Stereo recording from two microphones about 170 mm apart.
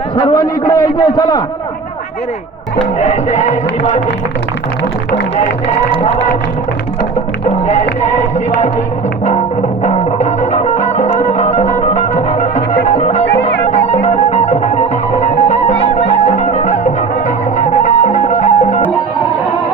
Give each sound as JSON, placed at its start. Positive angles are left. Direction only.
{"t": 0.2, "sound": "a man's voice", "side_deg": 30}
{"t": 3.0, "sound": "music", "side_deg": 40}
{"t": 7.5, "sound": "music", "side_deg": 45}
{"t": 9.8, "sound": "music", "side_deg": 45}